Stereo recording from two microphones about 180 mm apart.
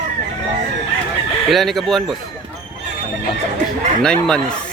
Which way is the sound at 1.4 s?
Centre (ahead or behind).